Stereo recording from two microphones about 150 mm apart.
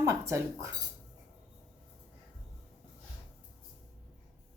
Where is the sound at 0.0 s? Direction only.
20° right (ahead or behind).